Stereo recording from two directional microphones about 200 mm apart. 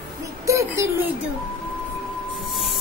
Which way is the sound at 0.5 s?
15° right (ahead or behind).